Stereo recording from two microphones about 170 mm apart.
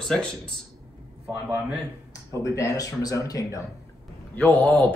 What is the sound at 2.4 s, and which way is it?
Speech, 20° left (ahead or behind).